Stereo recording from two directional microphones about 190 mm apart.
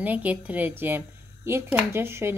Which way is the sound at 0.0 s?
10° right (ahead or behind).